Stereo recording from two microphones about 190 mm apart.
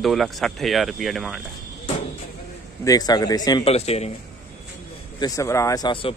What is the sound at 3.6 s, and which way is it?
Speech, 35° left (ahead or behind).